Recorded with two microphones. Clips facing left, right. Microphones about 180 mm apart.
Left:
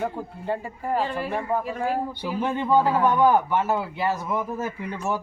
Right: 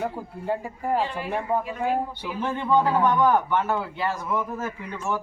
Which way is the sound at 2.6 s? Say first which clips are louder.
Even; 10° left (ahead or behind).